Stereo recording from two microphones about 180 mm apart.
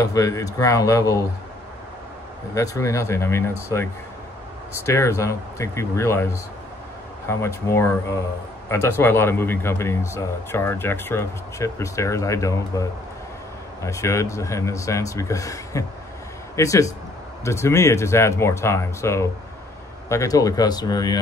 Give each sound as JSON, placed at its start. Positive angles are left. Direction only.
{"t": 0.0, "sound": "a man's voice", "side_deg": 20}
{"t": 2.5, "sound": "a man's voice", "side_deg": 15}
{"t": 4.8, "sound": "a man's voice", "side_deg": 15}
{"t": 13.8, "sound": "a man's voice", "side_deg": 15}